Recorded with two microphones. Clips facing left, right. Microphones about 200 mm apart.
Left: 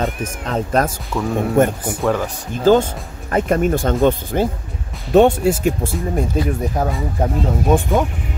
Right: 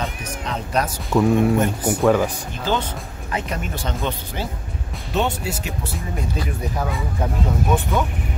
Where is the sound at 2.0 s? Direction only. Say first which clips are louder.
Right 2 dB; 5° right (ahead or behind).